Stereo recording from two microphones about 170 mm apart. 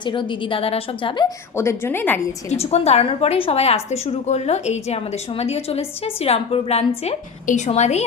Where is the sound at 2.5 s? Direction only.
40° left (ahead or behind).